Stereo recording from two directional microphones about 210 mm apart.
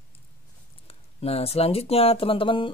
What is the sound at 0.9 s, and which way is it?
Speech, 30° left (ahead or behind).